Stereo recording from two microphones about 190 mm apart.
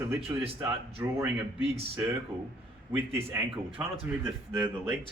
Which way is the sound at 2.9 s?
10° right (ahead or behind).